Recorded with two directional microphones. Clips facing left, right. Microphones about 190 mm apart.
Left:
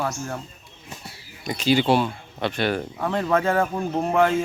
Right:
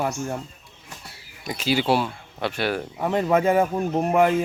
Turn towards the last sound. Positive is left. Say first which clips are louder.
# right 1 dB
turn(degrees=-10)  # may be behind; listen again after turning